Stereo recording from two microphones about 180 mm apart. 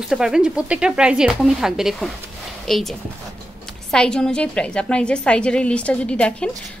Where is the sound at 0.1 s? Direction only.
5° right (ahead or behind).